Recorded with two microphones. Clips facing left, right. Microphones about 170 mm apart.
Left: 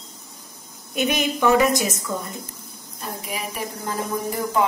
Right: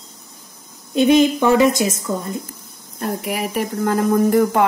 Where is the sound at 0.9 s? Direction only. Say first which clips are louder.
Right 9 dB; 30° right (ahead or behind).